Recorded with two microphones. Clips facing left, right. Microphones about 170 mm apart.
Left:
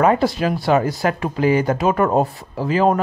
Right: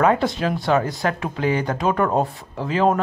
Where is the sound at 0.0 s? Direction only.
5° left (ahead or behind).